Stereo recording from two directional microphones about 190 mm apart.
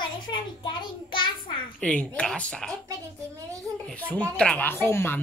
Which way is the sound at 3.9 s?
5° left (ahead or behind).